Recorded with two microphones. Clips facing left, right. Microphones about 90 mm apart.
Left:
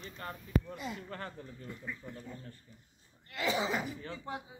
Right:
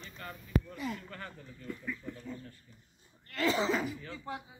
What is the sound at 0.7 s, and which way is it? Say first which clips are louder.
Speech: right 2 dB; 20° left (ahead or behind).